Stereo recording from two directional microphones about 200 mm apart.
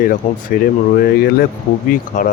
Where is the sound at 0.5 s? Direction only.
45° left (ahead or behind).